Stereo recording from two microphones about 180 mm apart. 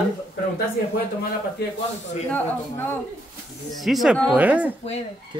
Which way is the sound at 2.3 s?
10° left (ahead or behind).